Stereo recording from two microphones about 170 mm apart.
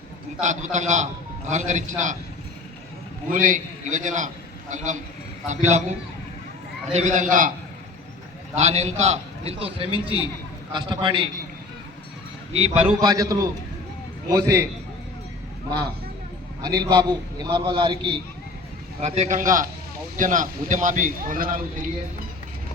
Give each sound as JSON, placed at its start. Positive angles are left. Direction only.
{"t": 0.4, "sound": "a man's voice", "side_deg": -45}
{"t": 3.3, "sound": "a man's voice", "side_deg": -50}
{"t": 6.9, "sound": "a man's voice", "side_deg": -45}
{"t": 8.5, "sound": "a man's voice", "side_deg": -40}
{"t": 12.5, "sound": "a man's voice", "side_deg": -40}
{"t": 13.0, "sound": "a man's voice", "side_deg": -20}
{"t": 16.6, "sound": "a man's voice", "side_deg": -20}
{"t": 19.0, "sound": "a man's voice", "side_deg": -40}